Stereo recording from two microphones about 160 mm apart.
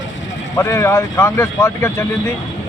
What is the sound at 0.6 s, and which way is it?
Speech, 20° left (ahead or behind).